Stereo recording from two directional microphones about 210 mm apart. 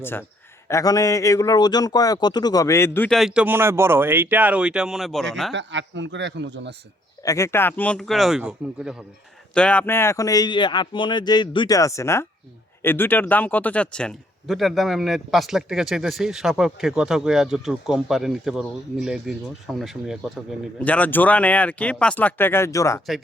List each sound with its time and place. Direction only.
0.0 s speech: 10° left (ahead or behind)
5.5 s speech: 60° right (ahead or behind)
7.2 s speech: 15° left (ahead or behind)